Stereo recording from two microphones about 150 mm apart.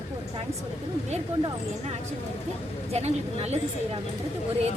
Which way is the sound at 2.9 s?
45° right (ahead or behind).